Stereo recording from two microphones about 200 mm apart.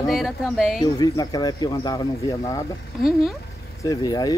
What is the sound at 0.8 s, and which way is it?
Speech, 20° left (ahead or behind).